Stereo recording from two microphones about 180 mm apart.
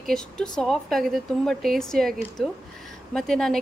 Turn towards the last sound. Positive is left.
turn(degrees=5)  # may be behind; listen again after turning